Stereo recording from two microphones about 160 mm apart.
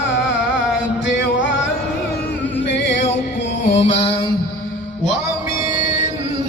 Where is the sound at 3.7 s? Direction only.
40° left (ahead or behind).